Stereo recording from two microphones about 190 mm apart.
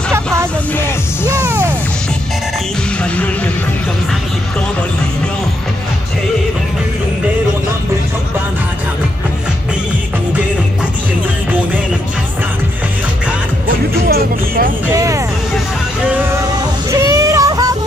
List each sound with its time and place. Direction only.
1.3 s music: 10° right (ahead or behind)
14.0 s music: 50° right (ahead or behind)
14.9 s vehicle: 15° right (ahead or behind)
17.0 s a sound: 15° right (ahead or behind)